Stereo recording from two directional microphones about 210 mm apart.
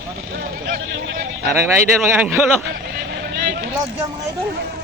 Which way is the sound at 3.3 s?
50° right (ahead or behind).